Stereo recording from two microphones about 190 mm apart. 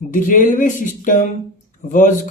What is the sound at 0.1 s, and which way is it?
Speech, 45° left (ahead or behind).